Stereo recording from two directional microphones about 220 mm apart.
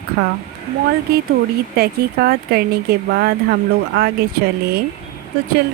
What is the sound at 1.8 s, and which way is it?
Speech, 45° right (ahead or behind).